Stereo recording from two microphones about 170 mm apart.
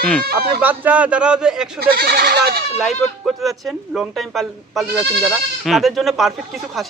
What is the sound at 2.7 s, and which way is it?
Speech, centre (ahead or behind).